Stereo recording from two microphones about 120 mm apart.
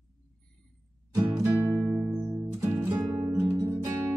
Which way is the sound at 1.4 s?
20° right (ahead or behind).